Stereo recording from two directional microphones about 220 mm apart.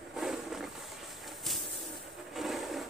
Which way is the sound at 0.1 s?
Centre (ahead or behind).